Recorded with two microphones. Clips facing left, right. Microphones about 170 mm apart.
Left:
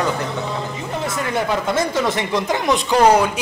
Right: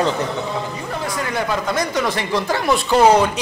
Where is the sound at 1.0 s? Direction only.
25° left (ahead or behind).